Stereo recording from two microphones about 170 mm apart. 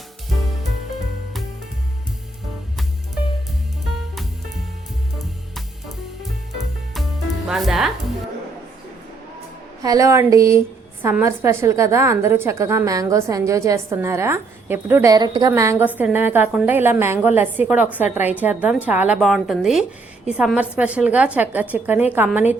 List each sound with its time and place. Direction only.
6.9 s music: centre (ahead or behind)
9.8 s a woman's voice: 20° right (ahead or behind)